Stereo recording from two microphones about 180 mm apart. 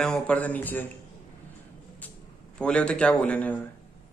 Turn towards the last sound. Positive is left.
turn(degrees=10)  # may be behind; listen again after turning